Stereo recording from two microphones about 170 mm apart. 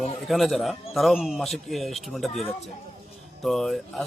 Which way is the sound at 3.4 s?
Centre (ahead or behind).